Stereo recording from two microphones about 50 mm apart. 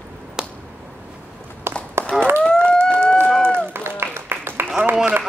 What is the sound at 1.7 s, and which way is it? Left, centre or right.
Run, right.